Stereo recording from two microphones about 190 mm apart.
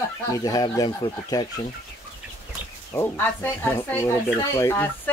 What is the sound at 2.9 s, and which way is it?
Speech, 15° left (ahead or behind).